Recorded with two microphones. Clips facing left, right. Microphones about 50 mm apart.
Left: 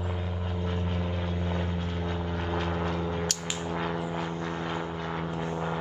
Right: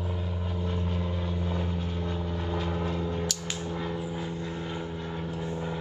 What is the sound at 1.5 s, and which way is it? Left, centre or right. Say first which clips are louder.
Vehicle: even; left.